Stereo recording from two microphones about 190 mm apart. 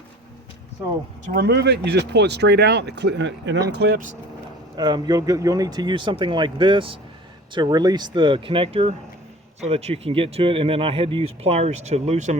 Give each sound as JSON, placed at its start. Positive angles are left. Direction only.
{"t": 0.8, "sound": "speech", "side_deg": -10}
{"t": 1.3, "sound": "speech", "side_deg": -60}
{"t": 3.7, "sound": "speech", "side_deg": -60}
{"t": 4.8, "sound": "speech", "side_deg": -20}